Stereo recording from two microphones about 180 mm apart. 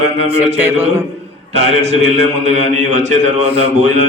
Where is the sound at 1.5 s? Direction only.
35° right (ahead or behind).